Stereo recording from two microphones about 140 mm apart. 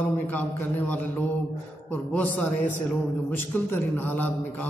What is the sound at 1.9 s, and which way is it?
A man's voice, 10° left (ahead or behind).